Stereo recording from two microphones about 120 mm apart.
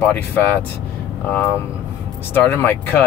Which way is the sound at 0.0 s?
15° left (ahead or behind).